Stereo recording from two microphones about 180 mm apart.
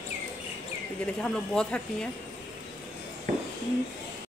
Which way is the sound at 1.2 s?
5° left (ahead or behind).